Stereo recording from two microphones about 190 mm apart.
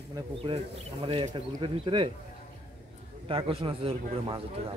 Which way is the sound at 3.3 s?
30° right (ahead or behind).